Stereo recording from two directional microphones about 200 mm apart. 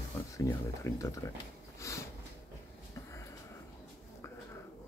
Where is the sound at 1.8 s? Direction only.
15° left (ahead or behind).